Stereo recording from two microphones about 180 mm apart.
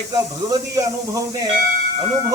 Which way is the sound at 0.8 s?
20° right (ahead or behind).